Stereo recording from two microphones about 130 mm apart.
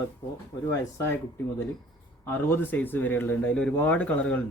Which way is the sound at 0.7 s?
20° left (ahead or behind).